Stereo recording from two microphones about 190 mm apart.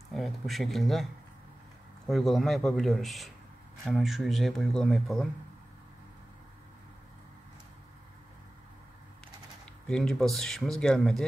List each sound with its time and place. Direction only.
0.1 s speech: centre (ahead or behind)
2.0 s speech: centre (ahead or behind)
9.8 s speech: 5° left (ahead or behind)